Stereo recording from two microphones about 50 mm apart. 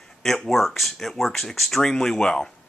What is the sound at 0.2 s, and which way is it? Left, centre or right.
Speech, centre.